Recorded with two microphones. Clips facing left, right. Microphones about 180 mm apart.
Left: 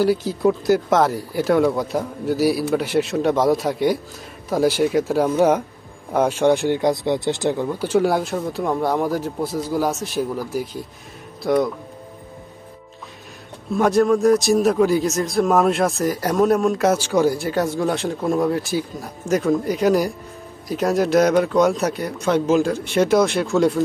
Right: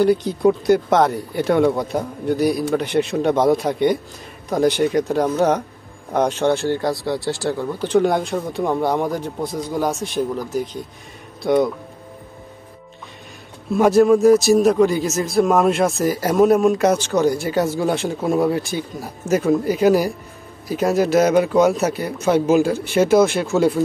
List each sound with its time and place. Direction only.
0.0 s a man's voice: 5° left (ahead or behind); by 7.6 s 20° left (ahead or behind)
7.6 s a man's voice: 5° left (ahead or behind)
13.7 s a man's voice: 5° right (ahead or behind)